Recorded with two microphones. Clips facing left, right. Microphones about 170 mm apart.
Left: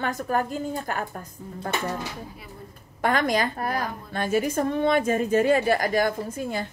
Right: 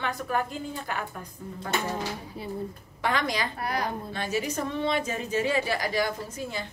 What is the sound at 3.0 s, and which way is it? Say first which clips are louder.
A woman's voice: left 5 dB; 50° left (ahead or behind).